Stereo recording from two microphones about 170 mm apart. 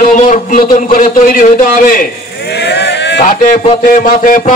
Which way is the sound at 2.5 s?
85° left.